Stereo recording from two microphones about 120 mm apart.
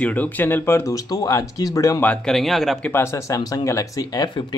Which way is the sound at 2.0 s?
10° left (ahead or behind).